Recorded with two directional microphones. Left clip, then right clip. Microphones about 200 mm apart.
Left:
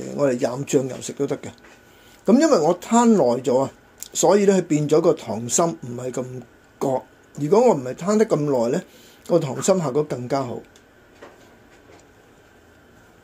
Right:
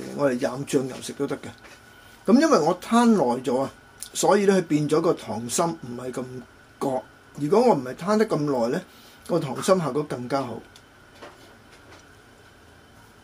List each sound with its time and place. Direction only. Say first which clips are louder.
0.2 s speech: left 3 dB; 20° left (ahead or behind)